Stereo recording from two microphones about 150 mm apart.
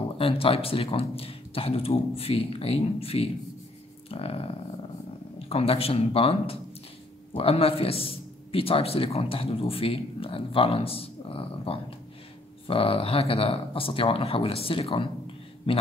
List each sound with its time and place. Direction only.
0.2 s a man's voice: 40° left (ahead or behind)
5.5 s a man's voice: 40° left (ahead or behind)